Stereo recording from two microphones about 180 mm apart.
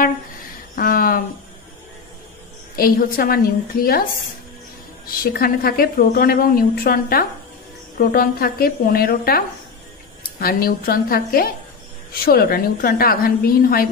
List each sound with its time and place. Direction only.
0.7 s a sound: 55° left (ahead or behind)
2.7 s a woman's voice: 55° left (ahead or behind)
10.4 s a woman's voice: 55° left (ahead or behind)